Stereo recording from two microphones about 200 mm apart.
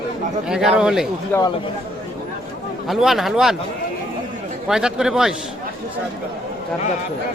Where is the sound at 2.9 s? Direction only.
Centre (ahead or behind).